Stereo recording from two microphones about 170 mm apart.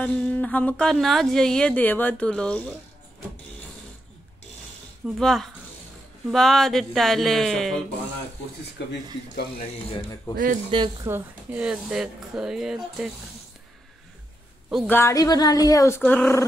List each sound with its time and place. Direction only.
0.0 s a woman's voice: 10° left (ahead or behind)
5.0 s speech: centre (ahead or behind)
8.8 s speech: 85° left
9.3 s speech: 55° left (ahead or behind)
10.3 s speech: 55° right (ahead or behind)
11.1 s speech: 10° right (ahead or behind)
14.9 s a woman's voice: 15° left (ahead or behind)
16.0 s a woman's voice: 5° left (ahead or behind)